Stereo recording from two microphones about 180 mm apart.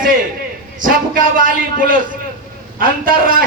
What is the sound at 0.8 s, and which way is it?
A man's voice, 50° right (ahead or behind).